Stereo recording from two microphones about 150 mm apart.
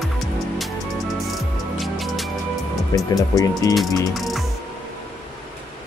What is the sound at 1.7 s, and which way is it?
Music, centre (ahead or behind).